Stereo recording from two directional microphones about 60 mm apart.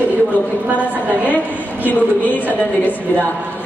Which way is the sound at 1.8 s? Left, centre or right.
Left.